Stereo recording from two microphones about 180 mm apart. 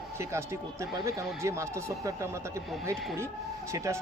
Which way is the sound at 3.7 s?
15° right (ahead or behind).